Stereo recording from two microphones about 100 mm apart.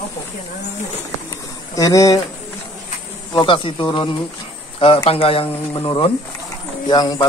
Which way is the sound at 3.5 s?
60° left (ahead or behind).